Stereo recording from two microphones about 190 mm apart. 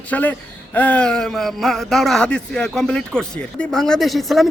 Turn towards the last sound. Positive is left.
turn(degrees=0)  # may be behind; listen again after turning